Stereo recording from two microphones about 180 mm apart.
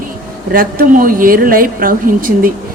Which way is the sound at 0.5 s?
50° right (ahead or behind).